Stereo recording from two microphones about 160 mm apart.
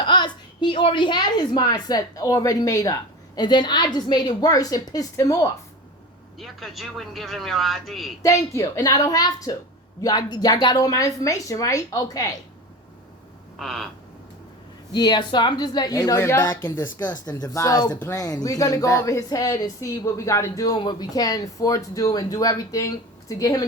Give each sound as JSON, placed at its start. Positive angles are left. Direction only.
{"t": 0.0, "sound": "a woman's voice", "side_deg": 30}
{"t": 6.4, "sound": "speech", "side_deg": 0}
{"t": 8.2, "sound": "a woman's voice", "side_deg": 20}
{"t": 13.6, "sound": "speech", "side_deg": 0}
{"t": 14.9, "sound": "a woman's voice", "side_deg": 25}